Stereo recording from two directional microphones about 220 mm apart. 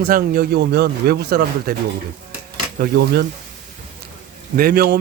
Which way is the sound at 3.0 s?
45° right (ahead or behind).